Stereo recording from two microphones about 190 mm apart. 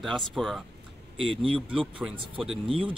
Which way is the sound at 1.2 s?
30° right (ahead or behind).